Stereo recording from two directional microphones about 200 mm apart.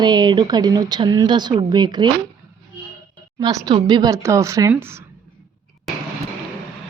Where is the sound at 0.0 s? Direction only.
20° right (ahead or behind).